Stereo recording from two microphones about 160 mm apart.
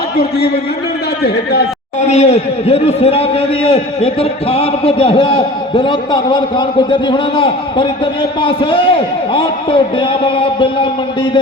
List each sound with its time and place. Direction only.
0.2 s a man's voice: 85° left
2.0 s a man's voice: 45° left (ahead or behind)